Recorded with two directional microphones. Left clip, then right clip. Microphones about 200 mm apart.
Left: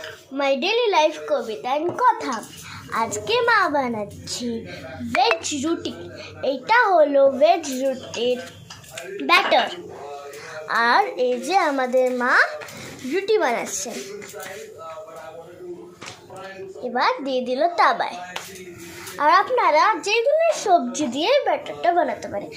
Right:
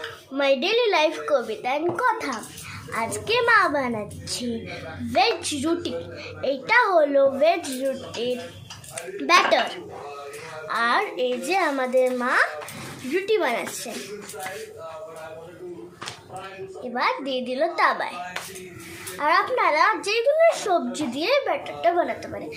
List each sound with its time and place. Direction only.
0.3 s a child's voice: 5° left (ahead or behind)
10.7 s a child's voice: 20° left (ahead or behind)
12.2 s a child's voice: centre (ahead or behind)
13.1 s a child's voice: 20° left (ahead or behind)
16.9 s a child's voice: 15° left (ahead or behind)